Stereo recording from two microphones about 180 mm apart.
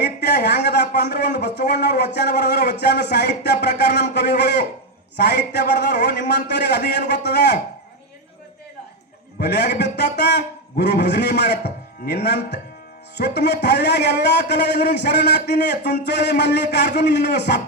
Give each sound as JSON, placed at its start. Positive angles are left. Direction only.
{"t": 0.0, "sound": "a man's voice", "side_deg": 65}
{"t": 9.4, "sound": "a man's voice", "side_deg": 70}